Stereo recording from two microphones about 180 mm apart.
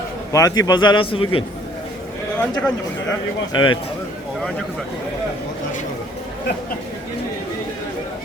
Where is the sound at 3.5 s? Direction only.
25° left (ahead or behind).